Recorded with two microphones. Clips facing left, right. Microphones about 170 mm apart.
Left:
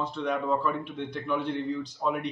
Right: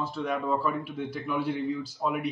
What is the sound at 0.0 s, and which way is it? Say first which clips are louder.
A man's voice: left 1 dB; 5° right (ahead or behind).